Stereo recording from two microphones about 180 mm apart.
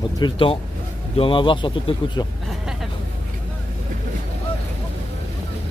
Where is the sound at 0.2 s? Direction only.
30° left (ahead or behind).